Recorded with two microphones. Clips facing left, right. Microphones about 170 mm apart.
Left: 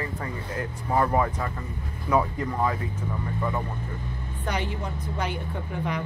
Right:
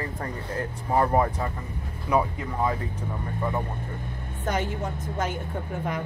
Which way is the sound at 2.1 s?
15° right (ahead or behind).